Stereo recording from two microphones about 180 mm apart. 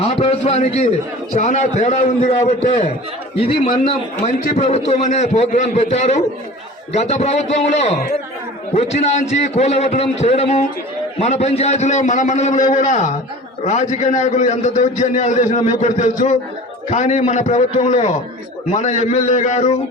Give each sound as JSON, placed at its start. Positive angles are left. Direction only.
{"t": 0.0, "sound": "a man's voice", "side_deg": 35}